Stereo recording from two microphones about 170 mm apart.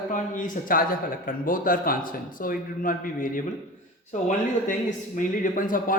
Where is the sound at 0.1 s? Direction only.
50° left (ahead or behind).